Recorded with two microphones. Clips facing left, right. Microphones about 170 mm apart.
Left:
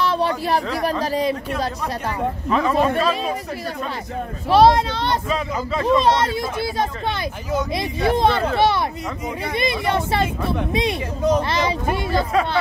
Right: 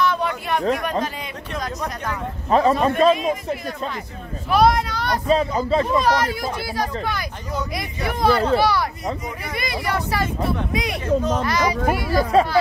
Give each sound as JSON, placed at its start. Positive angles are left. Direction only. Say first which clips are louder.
{"t": 0.0, "sound": "speech", "louder": "left 2 dB", "side_deg": 30}
{"t": 2.5, "sound": "a man's voice", "louder": "right 2 dB", "side_deg": -35}
{"t": 4.5, "sound": "a child's voice", "louder": "left 3 dB", "side_deg": 30}
{"t": 5.3, "sound": "a man's voice", "louder": "right 5 dB", "side_deg": -30}
{"t": 5.9, "sound": "a child's voice", "louder": "left 2 dB", "side_deg": 25}